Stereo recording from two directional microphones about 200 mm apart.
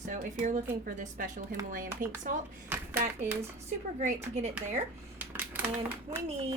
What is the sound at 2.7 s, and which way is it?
Speech, 10° right (ahead or behind).